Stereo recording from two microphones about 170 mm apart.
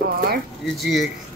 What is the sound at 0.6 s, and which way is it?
Speech, centre (ahead or behind).